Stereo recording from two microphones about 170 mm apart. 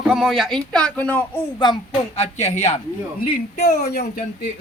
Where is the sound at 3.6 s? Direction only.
70° left (ahead or behind).